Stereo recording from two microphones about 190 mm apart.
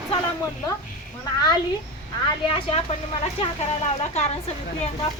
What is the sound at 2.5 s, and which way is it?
Speech, 30° left (ahead or behind).